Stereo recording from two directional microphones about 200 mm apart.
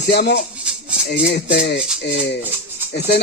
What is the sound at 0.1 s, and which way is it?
Speech, 50° left (ahead or behind).